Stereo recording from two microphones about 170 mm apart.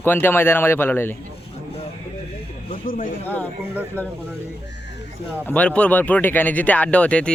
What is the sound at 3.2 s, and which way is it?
Speech, 10° left (ahead or behind).